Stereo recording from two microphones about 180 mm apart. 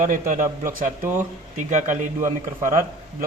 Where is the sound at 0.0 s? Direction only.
45° right (ahead or behind).